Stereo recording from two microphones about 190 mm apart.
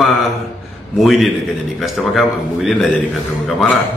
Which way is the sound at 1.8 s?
Centre (ahead or behind).